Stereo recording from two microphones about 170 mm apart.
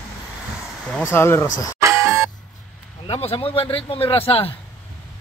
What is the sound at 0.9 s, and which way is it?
Speech, 15° left (ahead or behind).